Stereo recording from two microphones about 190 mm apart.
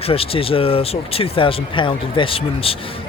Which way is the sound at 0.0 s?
30° left (ahead or behind).